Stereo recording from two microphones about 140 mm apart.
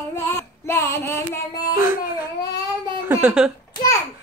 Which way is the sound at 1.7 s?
15° right (ahead or behind).